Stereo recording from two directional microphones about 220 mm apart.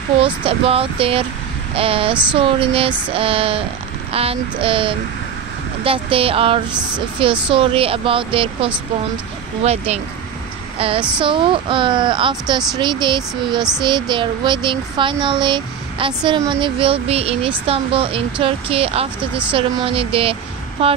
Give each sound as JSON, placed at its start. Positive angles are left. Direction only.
{"t": 0.2, "sound": "a child's voice", "side_deg": -25}
{"t": 11.1, "sound": "a child's voice", "side_deg": -20}
{"t": 13.6, "sound": "speech", "side_deg": 0}
{"t": 13.8, "sound": "a child's voice", "side_deg": -20}